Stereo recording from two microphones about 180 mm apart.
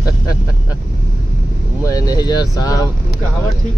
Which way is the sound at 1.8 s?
20° left (ahead or behind).